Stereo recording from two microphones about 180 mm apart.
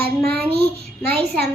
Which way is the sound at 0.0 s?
60° right (ahead or behind).